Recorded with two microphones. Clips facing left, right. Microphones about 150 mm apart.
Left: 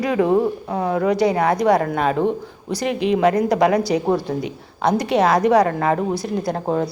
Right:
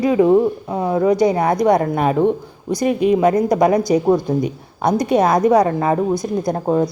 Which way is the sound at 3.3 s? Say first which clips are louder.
Right 2 dB; 30° right (ahead or behind).